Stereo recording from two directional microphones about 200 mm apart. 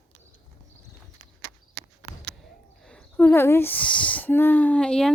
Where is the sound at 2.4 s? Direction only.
5° left (ahead or behind).